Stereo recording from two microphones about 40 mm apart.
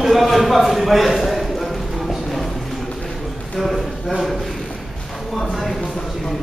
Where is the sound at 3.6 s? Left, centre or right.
Centre.